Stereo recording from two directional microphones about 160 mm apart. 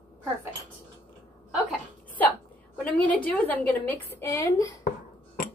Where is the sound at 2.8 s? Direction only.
10° left (ahead or behind).